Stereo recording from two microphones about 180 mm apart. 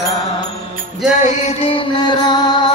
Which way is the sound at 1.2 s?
35° left (ahead or behind).